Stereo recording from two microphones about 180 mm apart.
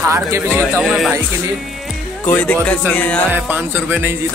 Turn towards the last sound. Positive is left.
turn(degrees=-10)  # may be behind; listen again after turning